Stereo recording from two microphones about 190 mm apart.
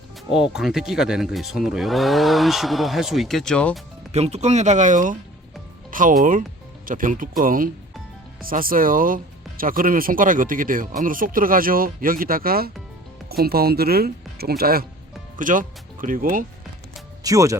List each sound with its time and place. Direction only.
0.3 s speech: 5° right (ahead or behind)
4.1 s speech: 35° right (ahead or behind)
17.2 s speech: 15° right (ahead or behind)